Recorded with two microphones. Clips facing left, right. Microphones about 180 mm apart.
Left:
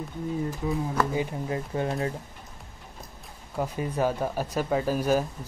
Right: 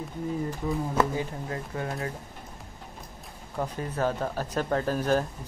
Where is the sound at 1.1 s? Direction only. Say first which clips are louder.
Left 3 dB; 20° left (ahead or behind).